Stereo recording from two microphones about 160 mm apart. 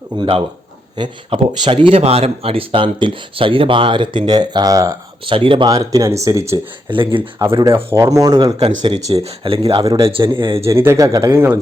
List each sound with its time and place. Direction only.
0.2 s speech: 35° right (ahead or behind)
5.2 s speech: 35° right (ahead or behind); by 6.6 s 20° right (ahead or behind)
6.9 s speech: 30° right (ahead or behind)
7.4 s speech: 20° right (ahead or behind)
10.6 s speech: 15° right (ahead or behind)